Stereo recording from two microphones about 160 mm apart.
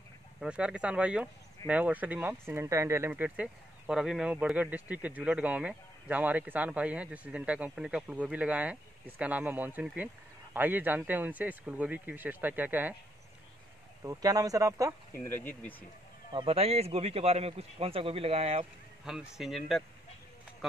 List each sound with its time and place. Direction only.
0.4 s speech: 5° right (ahead or behind)
14.0 s speech: 20° right (ahead or behind)
15.1 s speech: 15° left (ahead or behind)
16.3 s a man's voice: 35° right (ahead or behind)
19.0 s speech: 5° right (ahead or behind)